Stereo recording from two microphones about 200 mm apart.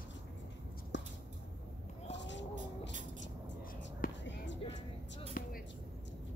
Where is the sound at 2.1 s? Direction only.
65° left (ahead or behind).